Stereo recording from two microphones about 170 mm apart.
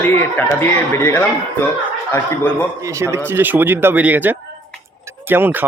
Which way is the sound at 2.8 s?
15° right (ahead or behind).